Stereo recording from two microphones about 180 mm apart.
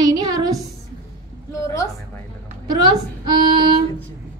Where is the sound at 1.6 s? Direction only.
20° left (ahead or behind).